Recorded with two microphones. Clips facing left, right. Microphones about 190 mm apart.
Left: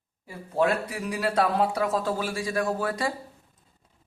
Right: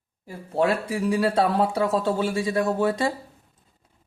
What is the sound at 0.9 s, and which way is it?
Speech, 30° right (ahead or behind).